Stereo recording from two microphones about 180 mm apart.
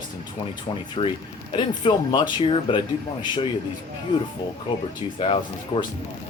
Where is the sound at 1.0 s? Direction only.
30° left (ahead or behind).